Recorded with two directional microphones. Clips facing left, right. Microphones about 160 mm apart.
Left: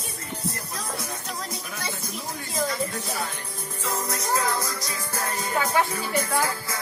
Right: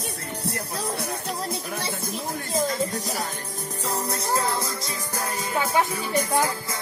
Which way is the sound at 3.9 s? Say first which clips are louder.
Even; 30° right (ahead or behind).